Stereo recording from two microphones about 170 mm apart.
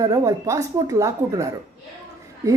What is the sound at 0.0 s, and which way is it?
A woman's voice, 20° right (ahead or behind).